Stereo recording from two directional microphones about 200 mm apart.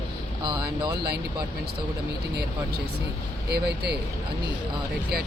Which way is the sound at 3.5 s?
55° right (ahead or behind).